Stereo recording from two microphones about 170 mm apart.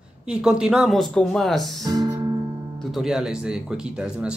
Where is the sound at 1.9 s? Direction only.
20° right (ahead or behind).